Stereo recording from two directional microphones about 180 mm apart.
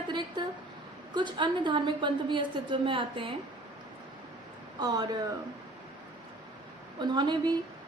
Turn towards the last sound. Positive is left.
turn(degrees=-25)  # may be behind; listen again after turning